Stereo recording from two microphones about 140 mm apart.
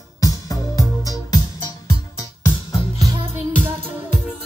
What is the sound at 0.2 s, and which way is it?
Music, 25° left (ahead or behind).